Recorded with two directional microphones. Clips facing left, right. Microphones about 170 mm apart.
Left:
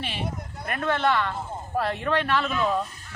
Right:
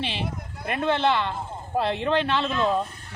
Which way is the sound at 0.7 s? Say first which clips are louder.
Right 2 dB; 30° right (ahead or behind).